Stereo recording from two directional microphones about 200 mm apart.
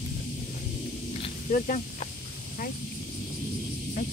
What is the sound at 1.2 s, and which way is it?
Snake, 35° left (ahead or behind).